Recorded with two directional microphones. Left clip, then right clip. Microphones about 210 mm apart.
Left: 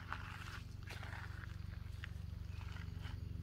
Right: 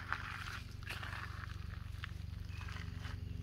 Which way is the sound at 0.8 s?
Centre (ahead or behind).